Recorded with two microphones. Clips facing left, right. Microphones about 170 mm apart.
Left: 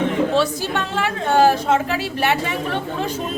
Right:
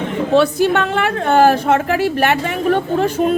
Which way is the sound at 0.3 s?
60° right (ahead or behind).